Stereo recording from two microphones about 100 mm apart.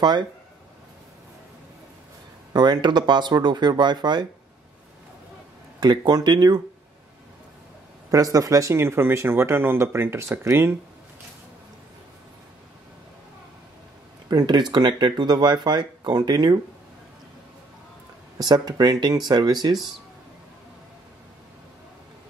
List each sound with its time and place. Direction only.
2.5 s speech: 45° right (ahead or behind)
5.8 s speech: 45° right (ahead or behind)
8.1 s speech: 35° right (ahead or behind)
14.3 s speech: 45° right (ahead or behind)
18.4 s speech: 45° right (ahead or behind)